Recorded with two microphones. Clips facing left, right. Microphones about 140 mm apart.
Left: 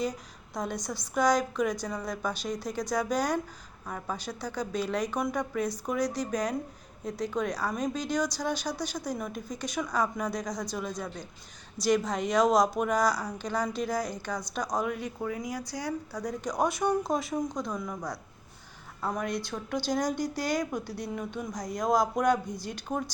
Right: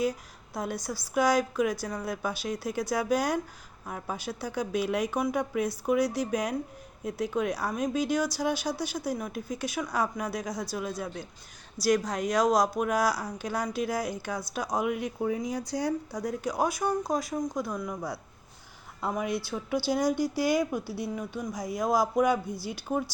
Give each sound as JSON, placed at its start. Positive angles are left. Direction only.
{"t": 0.0, "sound": "a woman's voice", "side_deg": -5}
{"t": 16.2, "sound": "speech", "side_deg": -5}